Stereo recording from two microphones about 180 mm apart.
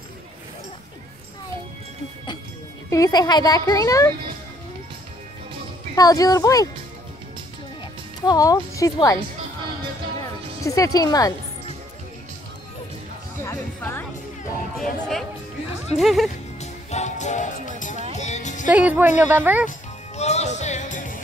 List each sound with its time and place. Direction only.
2.9 s a woman's voice: 20° left (ahead or behind)
5.9 s a woman's voice: 20° left (ahead or behind)
8.3 s a woman's voice: 20° left (ahead or behind)
10.6 s a woman's voice: 20° left (ahead or behind)
13.4 s music: 15° left (ahead or behind)
14.8 s music: centre (ahead or behind)
16.0 s speech: centre (ahead or behind)
16.5 s music: 40° left (ahead or behind)
18.7 s speech: 10° right (ahead or behind)
20.2 s music: 40° left (ahead or behind)